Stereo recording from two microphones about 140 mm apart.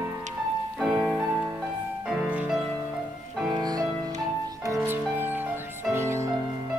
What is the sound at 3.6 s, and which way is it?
Music, 25° right (ahead or behind).